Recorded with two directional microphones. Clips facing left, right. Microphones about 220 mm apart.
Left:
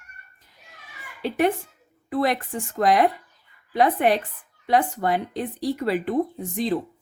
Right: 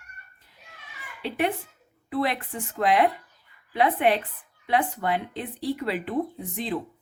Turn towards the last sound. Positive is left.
turn(degrees=40)  # may be behind; listen again after turning